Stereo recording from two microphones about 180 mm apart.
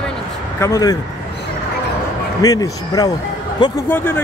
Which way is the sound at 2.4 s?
20° left (ahead or behind).